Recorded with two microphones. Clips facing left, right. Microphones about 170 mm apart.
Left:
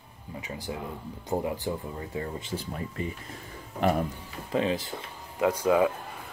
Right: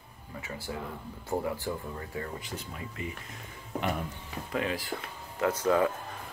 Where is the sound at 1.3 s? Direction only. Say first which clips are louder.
Left 2 dB; 20° left (ahead or behind).